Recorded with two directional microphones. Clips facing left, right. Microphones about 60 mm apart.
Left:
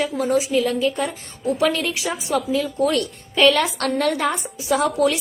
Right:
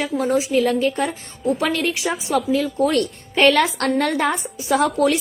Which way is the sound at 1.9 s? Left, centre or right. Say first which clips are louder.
Right 2 dB; right.